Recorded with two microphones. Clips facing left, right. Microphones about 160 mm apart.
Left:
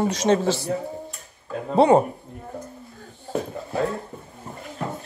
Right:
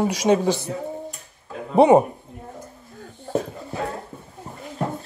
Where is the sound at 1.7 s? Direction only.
20° right (ahead or behind).